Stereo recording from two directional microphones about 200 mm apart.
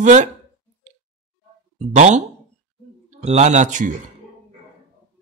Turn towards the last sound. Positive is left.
turn(degrees=-40)  # may be behind; listen again after turning